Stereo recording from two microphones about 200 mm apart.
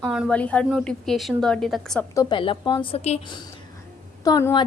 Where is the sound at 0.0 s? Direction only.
5° right (ahead or behind).